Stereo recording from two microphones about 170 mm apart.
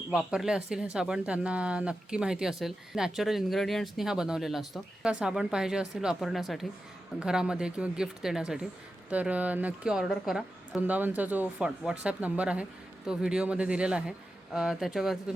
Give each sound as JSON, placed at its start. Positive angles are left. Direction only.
{"t": 0.1, "sound": "a woman's voice", "side_deg": -5}